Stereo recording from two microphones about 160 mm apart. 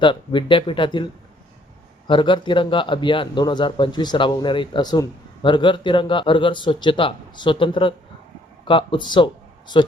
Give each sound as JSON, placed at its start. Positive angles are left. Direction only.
{"t": 0.0, "sound": "a man's voice", "side_deg": 30}
{"t": 2.0, "sound": "a man's voice", "side_deg": 30}